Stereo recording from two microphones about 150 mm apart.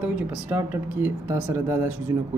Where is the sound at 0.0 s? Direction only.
10° right (ahead or behind).